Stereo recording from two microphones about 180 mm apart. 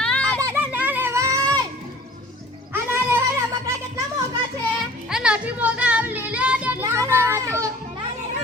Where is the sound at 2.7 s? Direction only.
15° right (ahead or behind).